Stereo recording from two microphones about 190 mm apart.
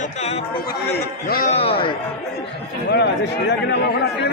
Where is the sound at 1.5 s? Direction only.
30° left (ahead or behind).